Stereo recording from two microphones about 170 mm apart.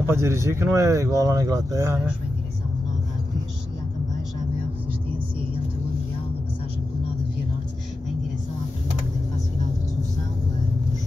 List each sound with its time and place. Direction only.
0.0 s speech: 15° right (ahead or behind)